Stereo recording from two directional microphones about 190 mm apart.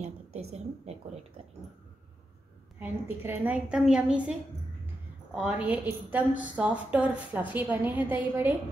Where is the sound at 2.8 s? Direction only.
10° right (ahead or behind).